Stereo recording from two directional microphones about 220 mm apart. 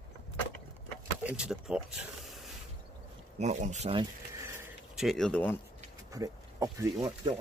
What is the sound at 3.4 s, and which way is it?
Speech, 30° right (ahead or behind).